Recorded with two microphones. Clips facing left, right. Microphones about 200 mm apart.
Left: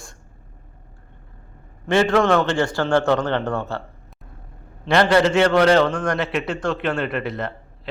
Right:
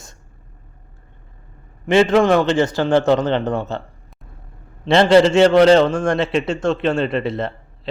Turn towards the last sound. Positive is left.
turn(degrees=-25)  # may be behind; listen again after turning